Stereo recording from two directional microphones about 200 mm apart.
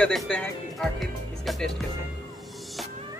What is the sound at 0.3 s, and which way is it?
Speech, 5° left (ahead or behind).